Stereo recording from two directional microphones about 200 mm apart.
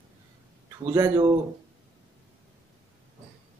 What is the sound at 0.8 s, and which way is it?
Music, 15° right (ahead or behind).